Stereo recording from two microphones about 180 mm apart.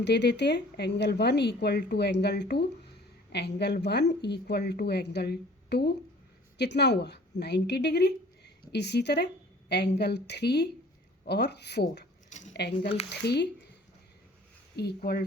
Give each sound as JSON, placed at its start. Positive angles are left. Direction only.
{"t": 0.0, "sound": "speech", "side_deg": 70}
{"t": 14.8, "sound": "speech", "side_deg": 60}